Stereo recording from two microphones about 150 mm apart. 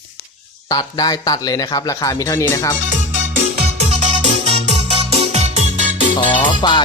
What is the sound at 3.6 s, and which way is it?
Music, 45° right (ahead or behind).